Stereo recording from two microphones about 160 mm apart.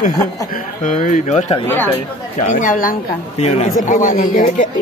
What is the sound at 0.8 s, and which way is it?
Speech, 55° left (ahead or behind).